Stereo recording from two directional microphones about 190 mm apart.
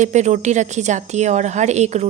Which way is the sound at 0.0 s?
40° right (ahead or behind).